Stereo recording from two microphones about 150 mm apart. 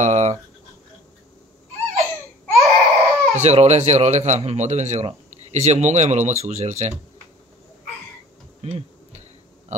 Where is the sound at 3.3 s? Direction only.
45° right (ahead or behind).